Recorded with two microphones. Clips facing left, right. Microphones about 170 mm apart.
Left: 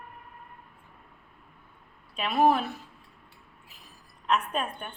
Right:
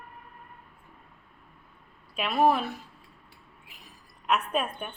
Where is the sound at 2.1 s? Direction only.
Centre (ahead or behind).